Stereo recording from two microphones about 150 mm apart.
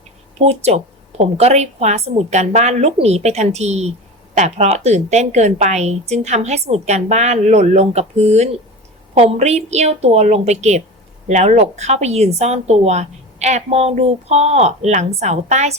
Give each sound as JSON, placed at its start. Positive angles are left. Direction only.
{"t": 0.3, "sound": "a woman's voice", "side_deg": -45}